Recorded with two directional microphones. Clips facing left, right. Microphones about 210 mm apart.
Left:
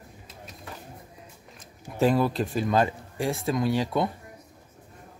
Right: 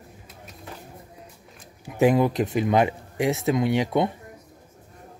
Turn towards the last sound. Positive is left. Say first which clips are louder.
# right 3 dB
turn(degrees=-20)  # may be behind; listen again after turning